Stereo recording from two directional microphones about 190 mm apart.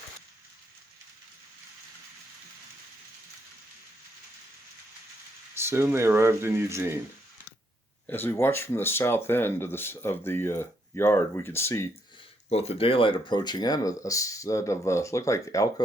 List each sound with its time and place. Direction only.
5.5 s speech: 15° right (ahead or behind)
8.0 s speech: 10° left (ahead or behind)
12.5 s speech: 35° left (ahead or behind); by 15.7 s 15° left (ahead or behind)